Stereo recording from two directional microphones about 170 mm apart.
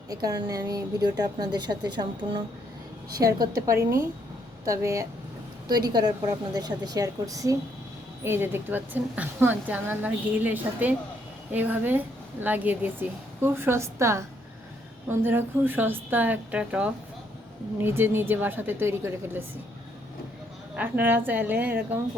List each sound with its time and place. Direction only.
0.1 s a woman's voice: 20° right (ahead or behind)
20.7 s a woman's voice: 10° right (ahead or behind)